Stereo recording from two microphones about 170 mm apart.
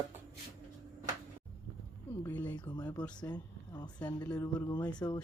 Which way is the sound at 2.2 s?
10° left (ahead or behind).